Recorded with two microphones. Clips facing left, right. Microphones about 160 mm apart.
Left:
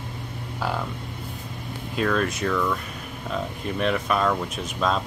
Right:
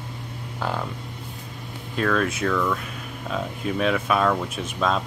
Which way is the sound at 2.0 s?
Centre (ahead or behind).